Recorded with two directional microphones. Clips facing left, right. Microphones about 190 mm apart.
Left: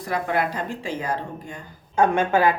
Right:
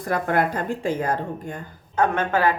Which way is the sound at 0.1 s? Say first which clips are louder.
Right 2 dB; 50° right (ahead or behind).